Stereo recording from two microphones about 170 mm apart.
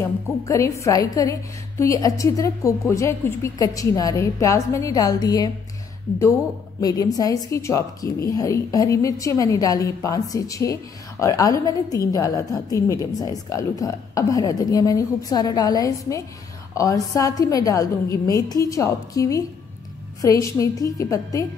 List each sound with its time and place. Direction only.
0.0 s a woman's voice: 20° left (ahead or behind)
6.8 s a woman's voice: 20° left (ahead or behind)